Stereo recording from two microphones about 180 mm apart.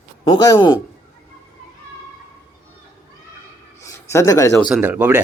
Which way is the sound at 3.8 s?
15° left (ahead or behind).